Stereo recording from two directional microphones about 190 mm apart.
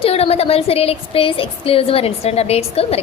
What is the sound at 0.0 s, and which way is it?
A woman's voice, 30° left (ahead or behind).